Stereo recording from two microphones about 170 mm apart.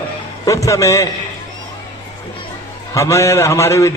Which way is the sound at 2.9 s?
15° left (ahead or behind).